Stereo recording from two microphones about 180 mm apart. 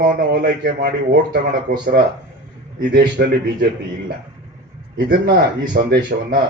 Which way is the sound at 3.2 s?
60° right (ahead or behind).